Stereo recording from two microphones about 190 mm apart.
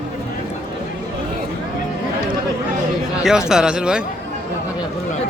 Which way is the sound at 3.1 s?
5° right (ahead or behind).